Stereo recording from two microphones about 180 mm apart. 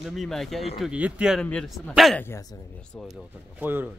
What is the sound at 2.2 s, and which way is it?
Speech, 15° left (ahead or behind).